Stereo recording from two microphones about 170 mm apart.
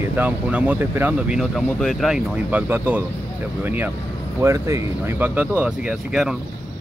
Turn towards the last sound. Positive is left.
turn(degrees=-10)  # may be behind; listen again after turning